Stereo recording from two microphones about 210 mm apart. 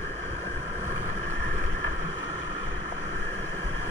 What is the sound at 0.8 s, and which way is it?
Vehicle, 70° left (ahead or behind).